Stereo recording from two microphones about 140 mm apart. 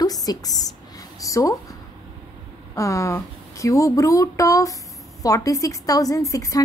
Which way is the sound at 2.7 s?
20° left (ahead or behind).